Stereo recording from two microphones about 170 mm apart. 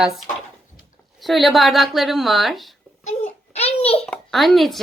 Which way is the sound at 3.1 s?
40° left (ahead or behind).